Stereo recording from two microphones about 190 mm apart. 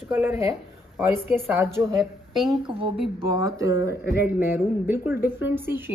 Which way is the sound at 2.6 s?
25° right (ahead or behind).